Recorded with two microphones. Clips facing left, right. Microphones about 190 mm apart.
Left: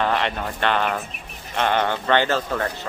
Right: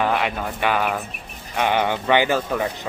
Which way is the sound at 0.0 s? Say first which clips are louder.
Right 1 dB; 5° right (ahead or behind).